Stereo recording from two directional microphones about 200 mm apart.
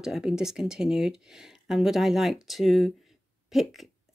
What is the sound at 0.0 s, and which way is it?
Speech, 5° right (ahead or behind).